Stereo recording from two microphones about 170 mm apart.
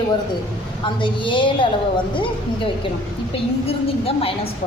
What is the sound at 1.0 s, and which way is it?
A woman's voice, 30° left (ahead or behind).